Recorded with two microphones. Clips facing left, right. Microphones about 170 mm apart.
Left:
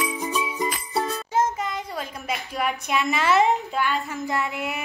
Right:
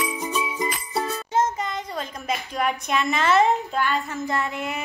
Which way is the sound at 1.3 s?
5° left (ahead or behind).